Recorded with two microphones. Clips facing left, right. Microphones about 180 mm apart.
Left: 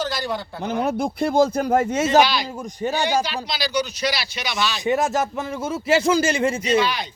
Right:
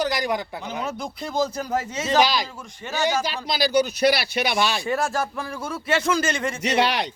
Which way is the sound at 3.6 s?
50° right (ahead or behind).